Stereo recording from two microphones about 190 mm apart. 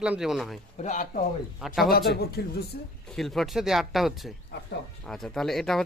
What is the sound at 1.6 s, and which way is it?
Speech, centre (ahead or behind).